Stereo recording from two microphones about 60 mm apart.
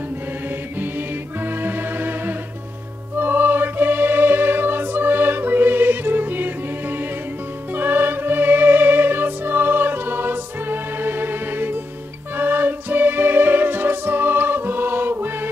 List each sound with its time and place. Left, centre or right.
0.7 s music: right